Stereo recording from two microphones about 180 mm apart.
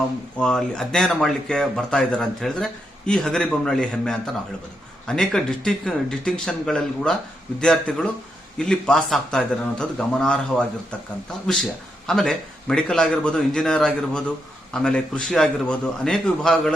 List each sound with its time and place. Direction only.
0.3 s a man's voice: 5° left (ahead or behind)
12.0 s a man's voice: 5° left (ahead or behind)